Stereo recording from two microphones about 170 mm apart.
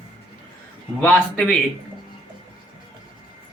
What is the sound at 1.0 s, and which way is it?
Speech, 5° left (ahead or behind).